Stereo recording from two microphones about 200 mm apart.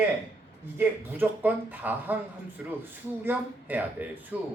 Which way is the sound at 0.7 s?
10° right (ahead or behind).